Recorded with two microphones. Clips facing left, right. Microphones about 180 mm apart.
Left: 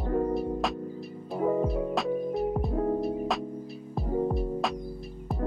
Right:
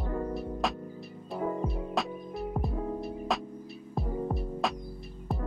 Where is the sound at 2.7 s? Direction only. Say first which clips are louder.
Left 7 dB; 50° left (ahead or behind).